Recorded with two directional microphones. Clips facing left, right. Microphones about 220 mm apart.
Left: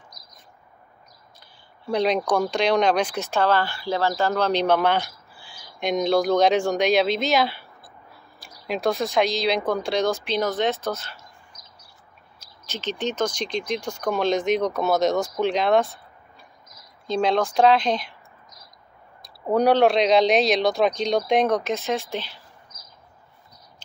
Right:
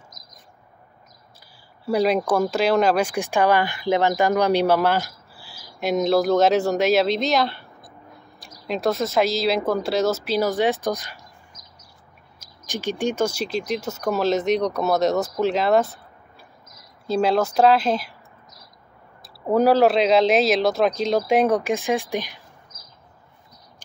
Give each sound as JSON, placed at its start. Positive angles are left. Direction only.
{"t": 0.2, "sound": "bird", "side_deg": -45}
{"t": 1.9, "sound": "speech", "side_deg": -5}
{"t": 8.6, "sound": "speech", "side_deg": 0}
{"t": 12.4, "sound": "speech", "side_deg": -15}
{"t": 17.1, "sound": "speech", "side_deg": -5}
{"t": 19.2, "sound": "speech", "side_deg": -5}